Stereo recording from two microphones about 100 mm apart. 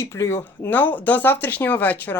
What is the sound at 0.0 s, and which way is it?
Speech, 30° left (ahead or behind).